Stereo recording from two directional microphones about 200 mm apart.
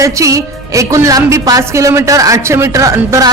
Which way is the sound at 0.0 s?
15° right (ahead or behind).